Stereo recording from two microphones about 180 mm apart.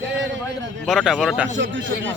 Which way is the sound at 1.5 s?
90° right.